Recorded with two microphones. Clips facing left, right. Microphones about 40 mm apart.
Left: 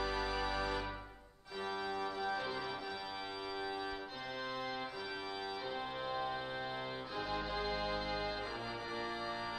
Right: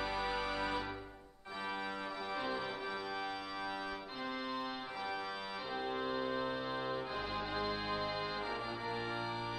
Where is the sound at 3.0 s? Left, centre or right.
Centre.